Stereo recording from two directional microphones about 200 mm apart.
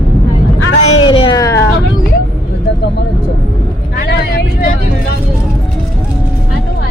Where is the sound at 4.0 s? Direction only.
50° left (ahead or behind).